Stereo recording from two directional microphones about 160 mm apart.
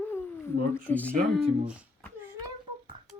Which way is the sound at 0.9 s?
10° left (ahead or behind).